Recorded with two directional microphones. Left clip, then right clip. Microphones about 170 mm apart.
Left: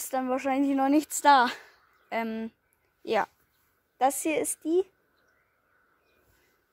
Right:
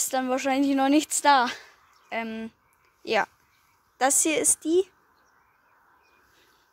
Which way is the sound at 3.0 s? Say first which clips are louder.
Right 2 dB; 15° left (ahead or behind).